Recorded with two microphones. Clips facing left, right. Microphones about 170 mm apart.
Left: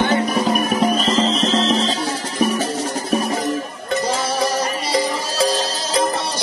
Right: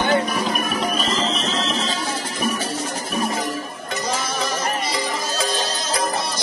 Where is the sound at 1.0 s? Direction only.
30° left (ahead or behind).